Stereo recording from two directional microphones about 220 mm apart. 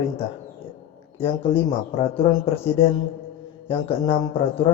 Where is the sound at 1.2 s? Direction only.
25° left (ahead or behind).